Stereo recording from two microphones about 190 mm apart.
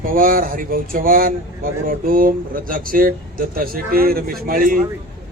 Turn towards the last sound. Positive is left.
turn(degrees=-45)  # may be behind; listen again after turning